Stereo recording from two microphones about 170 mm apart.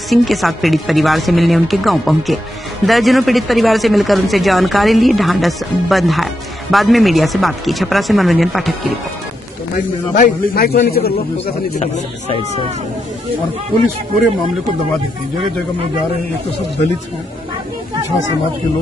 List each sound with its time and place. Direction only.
0.1 s speech: centre (ahead or behind)
9.8 s a man's voice: 55° left (ahead or behind)